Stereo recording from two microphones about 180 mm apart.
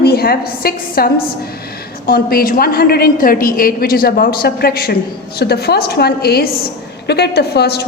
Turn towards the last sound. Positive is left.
turn(degrees=65)  # may be behind; listen again after turning